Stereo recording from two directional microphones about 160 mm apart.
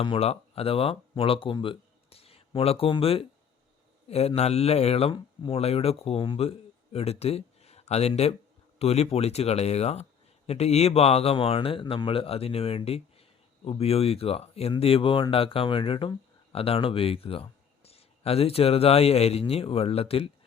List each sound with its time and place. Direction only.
0.0 s speech: 35° left (ahead or behind)